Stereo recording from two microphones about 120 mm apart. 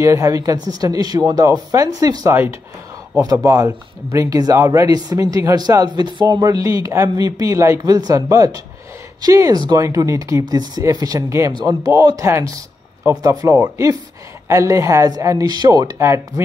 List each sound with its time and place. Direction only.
0.0 s speech: 25° right (ahead or behind)
3.4 s speech: 25° right (ahead or behind)